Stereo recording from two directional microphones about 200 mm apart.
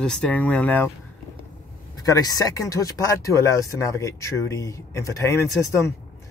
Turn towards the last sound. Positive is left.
turn(degrees=15)  # may be behind; listen again after turning